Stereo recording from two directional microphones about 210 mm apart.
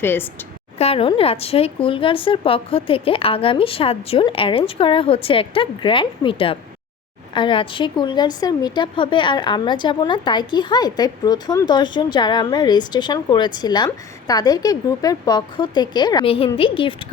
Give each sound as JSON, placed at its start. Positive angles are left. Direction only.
{"t": 0.0, "sound": "a woman's voice", "side_deg": 10}
{"t": 0.8, "sound": "a woman's voice", "side_deg": 30}